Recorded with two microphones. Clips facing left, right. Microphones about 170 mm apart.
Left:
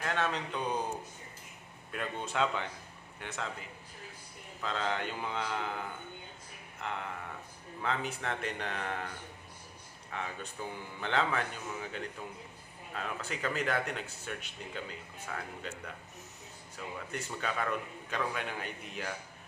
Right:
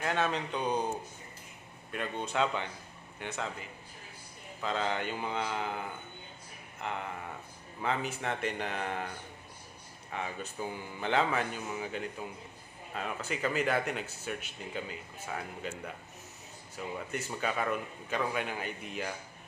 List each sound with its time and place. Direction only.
0.0 s speech: 5° right (ahead or behind)
1.9 s speech: centre (ahead or behind)
6.8 s speech: 5° right (ahead or behind)
10.1 s a man's voice: 5° right (ahead or behind)
17.1 s speech: 5° right (ahead or behind)